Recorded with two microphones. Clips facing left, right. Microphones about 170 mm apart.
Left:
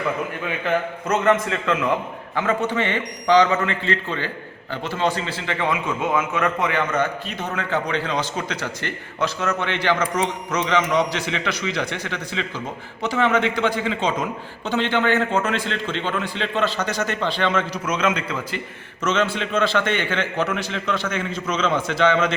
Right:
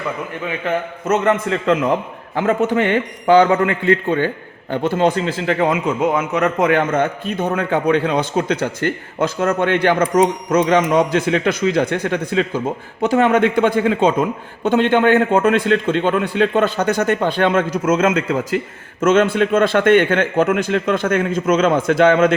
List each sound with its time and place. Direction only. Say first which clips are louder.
1.0 s a man's voice: right 4 dB; 25° right (ahead or behind)
3.2 s a man's voice: right 4 dB; 50° right (ahead or behind)